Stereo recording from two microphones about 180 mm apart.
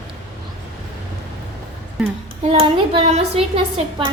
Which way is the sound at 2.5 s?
30° right (ahead or behind).